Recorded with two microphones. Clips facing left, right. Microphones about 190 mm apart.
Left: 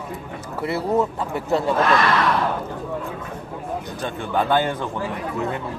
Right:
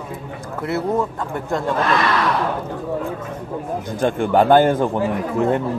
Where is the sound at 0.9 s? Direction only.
5° left (ahead or behind).